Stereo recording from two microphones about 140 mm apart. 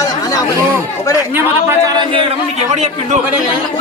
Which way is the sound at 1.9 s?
35° right (ahead or behind).